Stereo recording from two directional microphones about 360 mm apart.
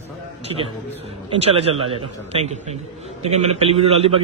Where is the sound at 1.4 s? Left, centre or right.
Centre.